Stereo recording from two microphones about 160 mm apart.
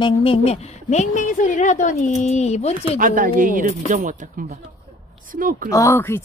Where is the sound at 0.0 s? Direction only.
35° left (ahead or behind).